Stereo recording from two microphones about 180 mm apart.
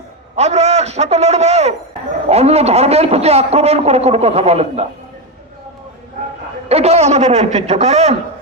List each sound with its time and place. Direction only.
0.3 s speech: 40° right (ahead or behind)
6.7 s speech: 35° right (ahead or behind)